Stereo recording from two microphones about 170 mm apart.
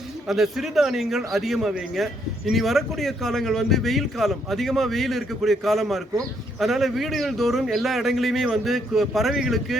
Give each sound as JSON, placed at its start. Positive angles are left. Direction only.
{"t": 0.3, "sound": "speech", "side_deg": 0}